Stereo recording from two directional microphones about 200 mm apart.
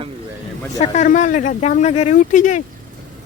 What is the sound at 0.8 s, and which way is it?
Speech, 35° left (ahead or behind).